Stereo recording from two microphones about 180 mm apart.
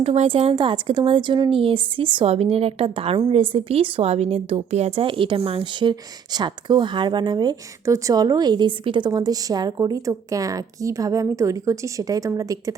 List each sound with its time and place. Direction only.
0.0 s speech: 35° right (ahead or behind); by 12.7 s 20° right (ahead or behind)